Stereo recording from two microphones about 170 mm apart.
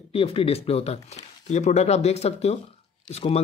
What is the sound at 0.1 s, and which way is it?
Speech, 35° left (ahead or behind).